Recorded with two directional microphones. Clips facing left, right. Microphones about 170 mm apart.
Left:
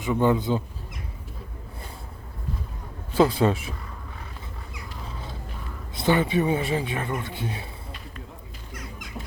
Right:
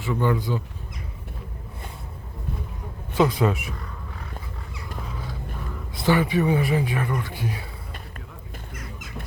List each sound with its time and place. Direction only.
0.0 s speech: 20° left (ahead or behind)
3.1 s speech: 30° left (ahead or behind)
6.0 s speech: 25° left (ahead or behind)